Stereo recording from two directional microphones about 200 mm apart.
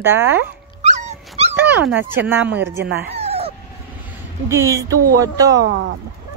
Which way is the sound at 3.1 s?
30° right (ahead or behind).